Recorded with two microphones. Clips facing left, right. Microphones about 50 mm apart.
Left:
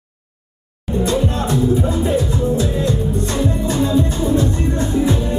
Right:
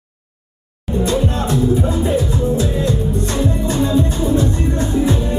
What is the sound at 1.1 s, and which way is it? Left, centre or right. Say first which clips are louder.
Speech: right 1 dB; centre.